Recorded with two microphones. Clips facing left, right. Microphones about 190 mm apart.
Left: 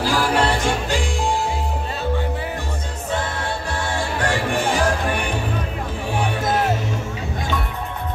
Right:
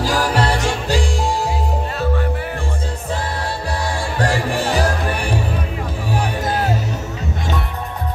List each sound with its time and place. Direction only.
0.0 s music: 40° right (ahead or behind)
4.2 s music: 35° right (ahead or behind)